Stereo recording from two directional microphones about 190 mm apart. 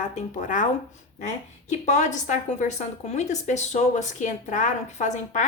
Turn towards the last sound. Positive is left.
turn(degrees=40)  # may be behind; listen again after turning